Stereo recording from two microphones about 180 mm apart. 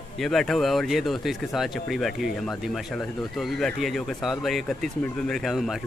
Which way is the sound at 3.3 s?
Centre (ahead or behind).